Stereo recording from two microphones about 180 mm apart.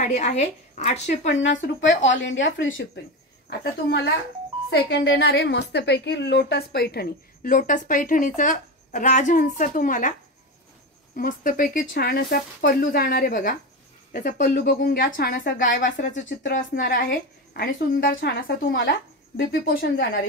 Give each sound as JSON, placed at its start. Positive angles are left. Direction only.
{"t": 0.0, "sound": "a woman's voice", "side_deg": 40}
{"t": 2.2, "sound": "speech", "side_deg": 90}
{"t": 3.4, "sound": "a woman's voice", "side_deg": 70}
{"t": 11.1, "sound": "a woman's voice", "side_deg": 50}
{"t": 17.6, "sound": "a woman's voice", "side_deg": 65}